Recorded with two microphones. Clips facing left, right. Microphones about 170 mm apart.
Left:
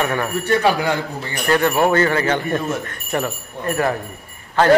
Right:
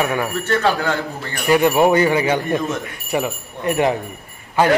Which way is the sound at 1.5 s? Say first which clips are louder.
Right 2 dB; 15° right (ahead or behind).